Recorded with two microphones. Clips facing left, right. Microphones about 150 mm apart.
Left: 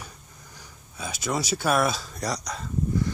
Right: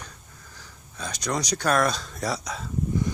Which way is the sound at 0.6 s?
10° left (ahead or behind).